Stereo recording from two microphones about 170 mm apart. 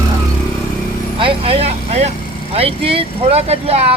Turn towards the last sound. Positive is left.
turn(degrees=-35)  # may be behind; listen again after turning